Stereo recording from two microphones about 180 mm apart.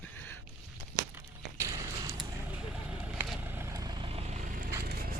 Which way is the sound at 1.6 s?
15° right (ahead or behind).